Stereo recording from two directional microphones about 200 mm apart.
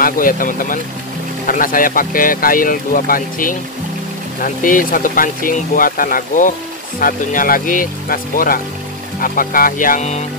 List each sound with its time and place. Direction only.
0.0 s speech: 45° left (ahead or behind)